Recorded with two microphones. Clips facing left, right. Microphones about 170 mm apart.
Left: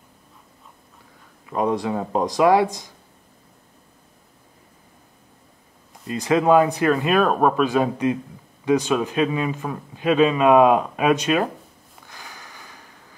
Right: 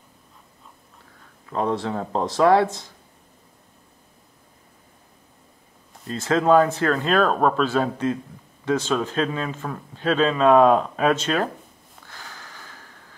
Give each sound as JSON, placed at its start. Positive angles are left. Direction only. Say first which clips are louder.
{"t": 1.4, "sound": "speech", "louder": "left 2 dB", "side_deg": 15}
{"t": 6.0, "sound": "speech", "louder": "left 1 dB", "side_deg": 15}
{"t": 12.1, "sound": "sniff", "louder": "even", "side_deg": 15}